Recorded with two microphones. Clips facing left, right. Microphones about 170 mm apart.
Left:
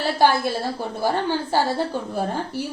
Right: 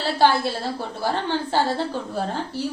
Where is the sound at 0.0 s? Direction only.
10° left (ahead or behind).